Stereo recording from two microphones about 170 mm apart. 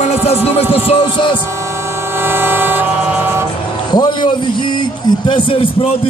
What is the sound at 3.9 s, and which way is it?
A man's voice, 25° left (ahead or behind).